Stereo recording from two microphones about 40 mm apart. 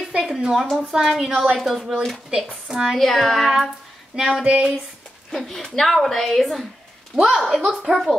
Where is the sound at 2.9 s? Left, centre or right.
Centre.